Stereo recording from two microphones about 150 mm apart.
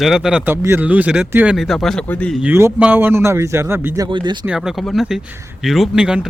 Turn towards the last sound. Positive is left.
turn(degrees=-5)  # may be behind; listen again after turning